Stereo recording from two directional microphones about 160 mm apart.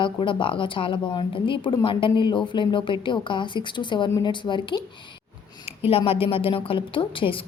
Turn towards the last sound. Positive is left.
turn(degrees=35)  # may be behind; listen again after turning